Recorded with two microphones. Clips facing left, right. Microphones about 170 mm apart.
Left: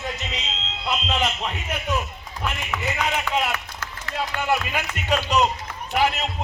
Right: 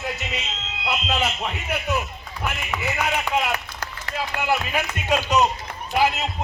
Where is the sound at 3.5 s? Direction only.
35° right (ahead or behind).